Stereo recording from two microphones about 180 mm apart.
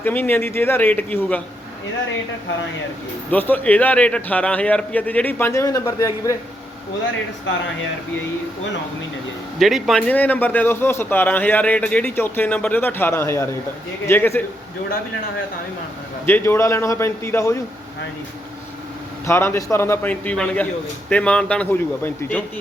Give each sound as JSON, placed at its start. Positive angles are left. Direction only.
{"t": 0.0, "sound": "a man's voice", "side_deg": 10}
{"t": 3.3, "sound": "a man's voice", "side_deg": 10}
{"t": 9.6, "sound": "a man's voice", "side_deg": 0}
{"t": 16.2, "sound": "a man's voice", "side_deg": 10}
{"t": 19.2, "sound": "a man's voice", "side_deg": 15}